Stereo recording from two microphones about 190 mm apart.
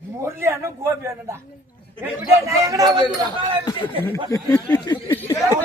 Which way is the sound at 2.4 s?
15° right (ahead or behind).